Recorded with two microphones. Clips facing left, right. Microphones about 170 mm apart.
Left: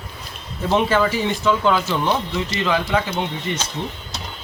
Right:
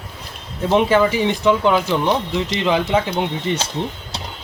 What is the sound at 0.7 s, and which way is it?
Speech, 15° right (ahead or behind).